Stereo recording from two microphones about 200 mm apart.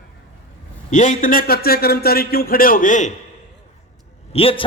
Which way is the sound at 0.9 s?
40° left (ahead or behind).